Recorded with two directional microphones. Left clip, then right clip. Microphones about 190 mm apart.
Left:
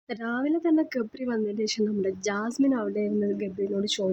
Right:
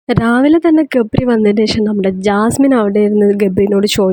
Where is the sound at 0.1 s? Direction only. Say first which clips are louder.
Right 17 dB; 45° right (ahead or behind).